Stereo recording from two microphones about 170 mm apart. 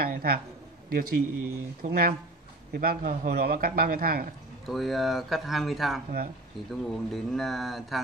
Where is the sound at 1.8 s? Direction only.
45° right (ahead or behind).